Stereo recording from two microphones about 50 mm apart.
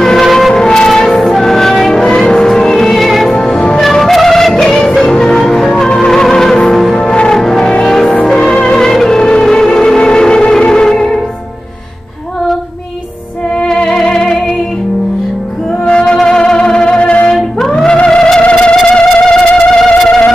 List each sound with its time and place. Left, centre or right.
0.0 s music: centre
3.4 s music: centre
3.8 s music: centre
6.9 s music: centre
13.6 s music: centre
15.8 s music: centre
17.6 s music: centre